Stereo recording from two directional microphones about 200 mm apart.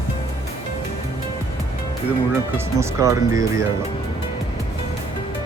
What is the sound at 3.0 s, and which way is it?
Speech, 15° right (ahead or behind).